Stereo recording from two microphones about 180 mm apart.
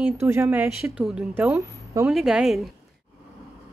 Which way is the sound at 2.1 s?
Centre (ahead or behind).